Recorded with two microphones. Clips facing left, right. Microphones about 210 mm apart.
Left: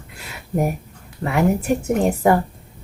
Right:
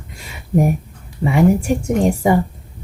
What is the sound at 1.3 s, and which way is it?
A woman's voice, 5° left (ahead or behind).